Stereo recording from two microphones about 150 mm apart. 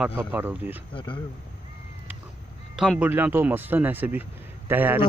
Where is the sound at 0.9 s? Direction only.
35° left (ahead or behind).